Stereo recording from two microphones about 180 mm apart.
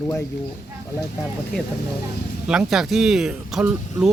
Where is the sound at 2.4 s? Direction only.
5° right (ahead or behind).